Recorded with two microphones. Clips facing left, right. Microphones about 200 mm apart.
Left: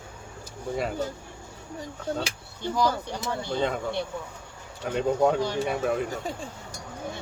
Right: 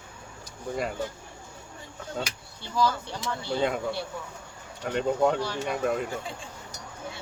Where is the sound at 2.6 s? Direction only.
15° left (ahead or behind).